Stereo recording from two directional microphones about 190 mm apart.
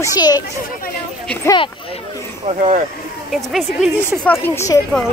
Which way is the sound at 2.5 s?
40° right (ahead or behind).